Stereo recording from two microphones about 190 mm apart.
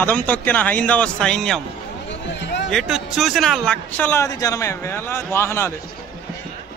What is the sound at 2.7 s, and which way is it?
Speech, centre (ahead or behind).